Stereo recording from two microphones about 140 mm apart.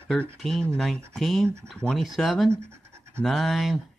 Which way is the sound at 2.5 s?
20° right (ahead or behind).